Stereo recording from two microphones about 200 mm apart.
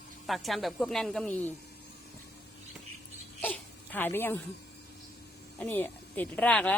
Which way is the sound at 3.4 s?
10° left (ahead or behind).